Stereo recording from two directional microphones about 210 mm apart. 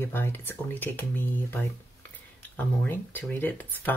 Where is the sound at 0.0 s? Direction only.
10° left (ahead or behind).